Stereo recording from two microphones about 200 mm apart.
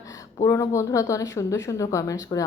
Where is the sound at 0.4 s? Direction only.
15° left (ahead or behind).